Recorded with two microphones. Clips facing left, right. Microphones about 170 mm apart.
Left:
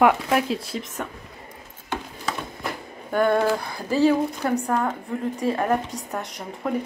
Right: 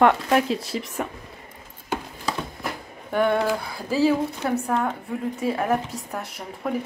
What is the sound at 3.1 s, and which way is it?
A woman's voice, centre (ahead or behind).